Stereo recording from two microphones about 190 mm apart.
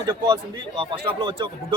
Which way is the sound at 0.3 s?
25° right (ahead or behind).